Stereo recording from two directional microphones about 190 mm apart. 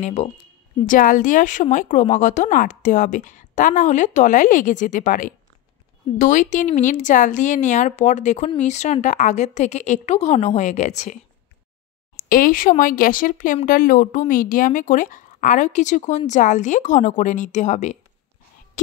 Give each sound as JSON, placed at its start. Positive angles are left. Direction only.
{"t": 0.0, "sound": "speech", "side_deg": 35}
{"t": 12.2, "sound": "speech", "side_deg": 50}